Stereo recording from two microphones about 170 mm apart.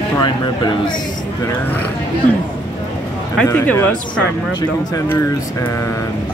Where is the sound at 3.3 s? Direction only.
10° left (ahead or behind).